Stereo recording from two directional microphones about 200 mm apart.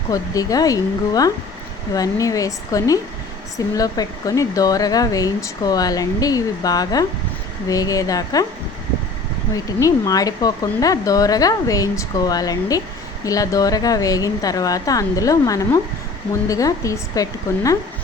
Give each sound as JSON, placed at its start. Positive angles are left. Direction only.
{"t": 0.1, "sound": "speech", "side_deg": 20}
{"t": 9.8, "sound": "speech", "side_deg": 20}